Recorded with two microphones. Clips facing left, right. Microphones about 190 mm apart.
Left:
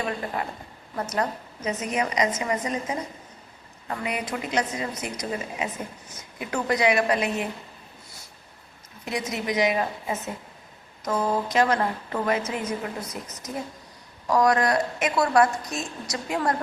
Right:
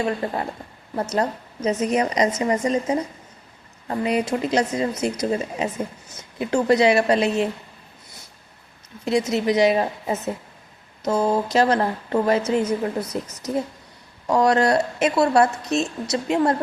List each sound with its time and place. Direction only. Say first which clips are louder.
0.0 s a woman's voice: right 5 dB; 30° right (ahead or behind)
9.0 s a woman's voice: right 8 dB; 30° right (ahead or behind)
14.3 s speech: right 3 dB; 30° right (ahead or behind)